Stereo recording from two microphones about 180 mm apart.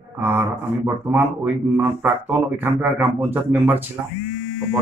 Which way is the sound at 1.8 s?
10° right (ahead or behind).